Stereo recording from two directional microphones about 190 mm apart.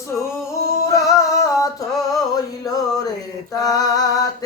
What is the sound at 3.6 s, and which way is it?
Music, 20° left (ahead or behind).